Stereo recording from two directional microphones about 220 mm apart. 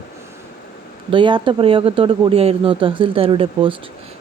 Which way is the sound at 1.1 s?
20° right (ahead or behind).